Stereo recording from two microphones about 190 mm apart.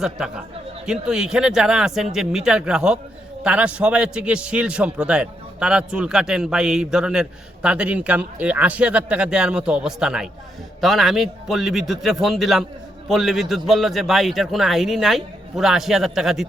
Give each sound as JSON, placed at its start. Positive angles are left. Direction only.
{"t": 0.9, "sound": "a man's voice", "side_deg": -5}